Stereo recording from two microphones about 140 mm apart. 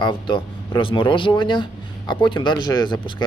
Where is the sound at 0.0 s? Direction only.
35° left (ahead or behind).